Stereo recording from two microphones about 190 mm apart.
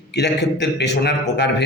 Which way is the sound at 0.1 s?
60° left (ahead or behind).